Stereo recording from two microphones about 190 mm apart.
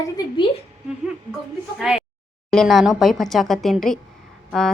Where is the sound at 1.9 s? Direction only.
5° right (ahead or behind).